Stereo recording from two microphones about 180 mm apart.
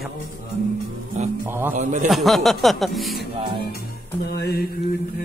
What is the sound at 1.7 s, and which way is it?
Speech, 45° right (ahead or behind).